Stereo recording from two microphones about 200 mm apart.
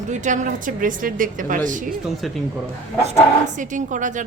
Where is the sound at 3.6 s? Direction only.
40° right (ahead or behind).